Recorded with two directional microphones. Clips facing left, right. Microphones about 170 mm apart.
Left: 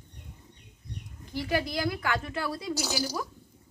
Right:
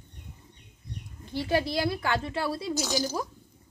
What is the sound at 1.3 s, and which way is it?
A woman's voice, 30° right (ahead or behind).